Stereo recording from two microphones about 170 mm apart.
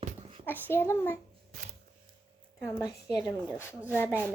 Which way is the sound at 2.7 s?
15° left (ahead or behind).